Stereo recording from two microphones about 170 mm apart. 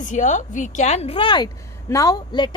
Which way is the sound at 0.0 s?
50° left (ahead or behind).